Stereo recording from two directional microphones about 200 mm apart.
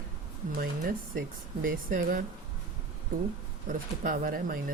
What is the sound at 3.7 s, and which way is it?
Speech, 45° right (ahead or behind).